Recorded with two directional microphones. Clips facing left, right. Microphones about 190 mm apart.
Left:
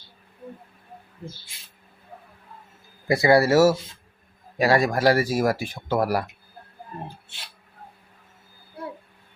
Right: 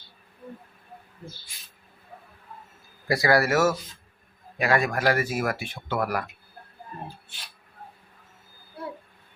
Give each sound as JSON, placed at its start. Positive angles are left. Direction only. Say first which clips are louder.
{"t": 3.1, "sound": "speech", "louder": "left 4 dB", "side_deg": 25}